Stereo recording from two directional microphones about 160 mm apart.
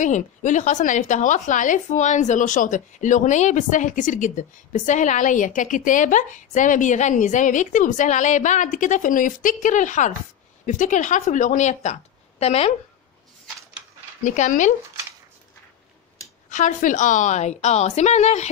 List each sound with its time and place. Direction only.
0.0 s a woman's voice: 50° left (ahead or behind)
14.2 s a woman's voice: 50° left (ahead or behind)
16.4 s a woman's voice: 50° left (ahead or behind)